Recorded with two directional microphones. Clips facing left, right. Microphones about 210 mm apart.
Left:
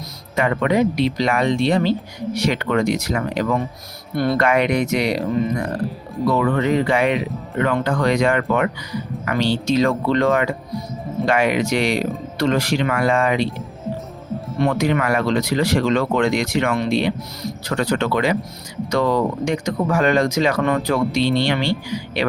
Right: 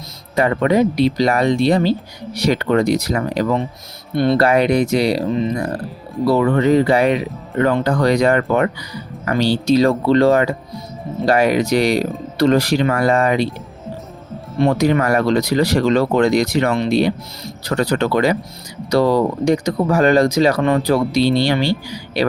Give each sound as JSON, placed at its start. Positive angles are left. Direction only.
{"t": 0.3, "sound": "speech", "side_deg": -35}
{"t": 14.6, "sound": "speech", "side_deg": -35}